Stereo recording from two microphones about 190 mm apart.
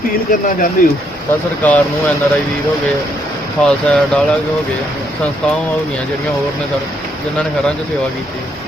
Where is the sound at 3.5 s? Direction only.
5° left (ahead or behind).